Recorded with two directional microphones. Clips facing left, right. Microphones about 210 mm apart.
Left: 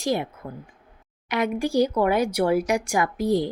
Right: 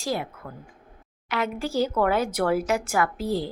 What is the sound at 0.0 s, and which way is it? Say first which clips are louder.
A woman's voice: left 4 dB; 20° left (ahead or behind).